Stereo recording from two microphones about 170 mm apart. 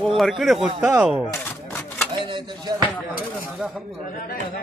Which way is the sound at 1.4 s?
10° left (ahead or behind).